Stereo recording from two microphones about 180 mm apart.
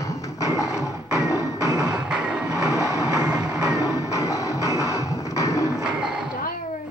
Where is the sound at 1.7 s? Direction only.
5° right (ahead or behind).